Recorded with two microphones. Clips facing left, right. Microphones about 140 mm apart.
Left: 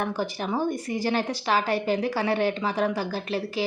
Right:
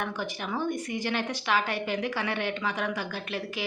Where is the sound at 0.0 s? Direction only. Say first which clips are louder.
Left 5 dB; 35° left (ahead or behind).